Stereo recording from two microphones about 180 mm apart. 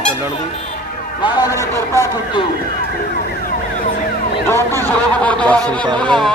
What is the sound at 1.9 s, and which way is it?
Speech, 20° left (ahead or behind).